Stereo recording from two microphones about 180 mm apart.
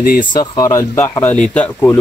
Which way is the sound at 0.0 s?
55° left (ahead or behind).